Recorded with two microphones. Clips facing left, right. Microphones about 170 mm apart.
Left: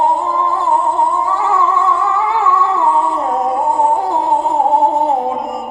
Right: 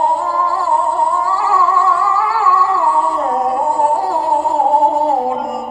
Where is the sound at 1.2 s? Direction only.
20° left (ahead or behind).